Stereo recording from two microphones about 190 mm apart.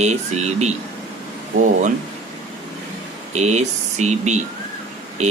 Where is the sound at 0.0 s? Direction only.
35° right (ahead or behind).